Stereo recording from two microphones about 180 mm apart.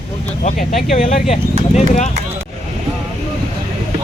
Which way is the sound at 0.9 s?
40° left (ahead or behind).